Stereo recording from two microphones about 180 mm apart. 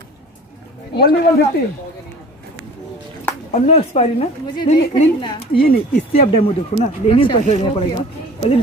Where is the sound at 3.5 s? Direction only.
35° left (ahead or behind).